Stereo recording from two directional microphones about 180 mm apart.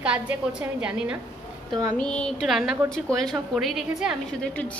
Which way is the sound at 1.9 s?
5° left (ahead or behind).